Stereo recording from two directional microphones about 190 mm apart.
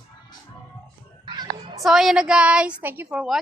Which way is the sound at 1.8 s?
Centre (ahead or behind).